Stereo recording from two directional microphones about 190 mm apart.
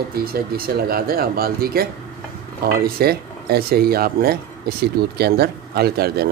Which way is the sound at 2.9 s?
55° right (ahead or behind).